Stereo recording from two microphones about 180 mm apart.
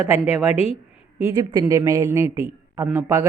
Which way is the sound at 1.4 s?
20° right (ahead or behind).